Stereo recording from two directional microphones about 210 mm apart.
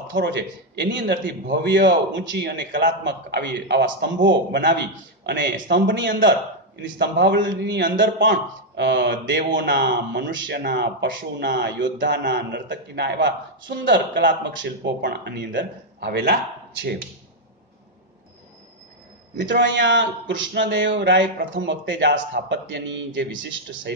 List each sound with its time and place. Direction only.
0.1 s a man's voice: 55° right (ahead or behind)
19.3 s a man's voice: 60° right (ahead or behind)